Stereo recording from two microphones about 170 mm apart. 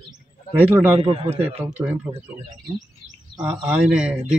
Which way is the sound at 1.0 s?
35° right (ahead or behind).